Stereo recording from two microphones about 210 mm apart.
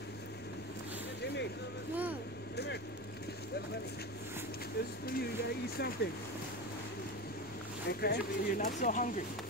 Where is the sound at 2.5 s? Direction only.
50° left (ahead or behind).